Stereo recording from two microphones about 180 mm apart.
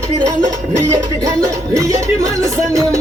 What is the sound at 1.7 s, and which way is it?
Music, 15° right (ahead or behind).